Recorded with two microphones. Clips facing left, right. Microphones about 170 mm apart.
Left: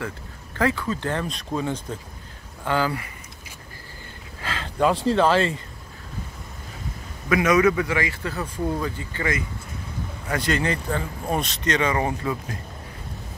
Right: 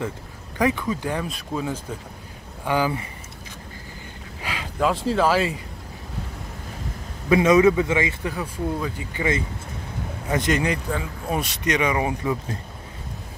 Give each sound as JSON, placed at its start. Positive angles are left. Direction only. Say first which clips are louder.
{"t": 0.6, "sound": "speech", "louder": "right 1 dB", "side_deg": -15}
{"t": 2.6, "sound": "speech", "louder": "right 1 dB", "side_deg": -15}
{"t": 4.4, "sound": "a sound", "louder": "even", "side_deg": -15}
{"t": 4.7, "sound": "speech", "louder": "left 2 dB", "side_deg": 0}
{"t": 7.2, "sound": "a man's voice", "louder": "right 3 dB", "side_deg": -25}